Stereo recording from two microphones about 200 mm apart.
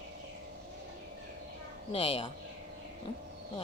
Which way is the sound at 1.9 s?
25° left (ahead or behind).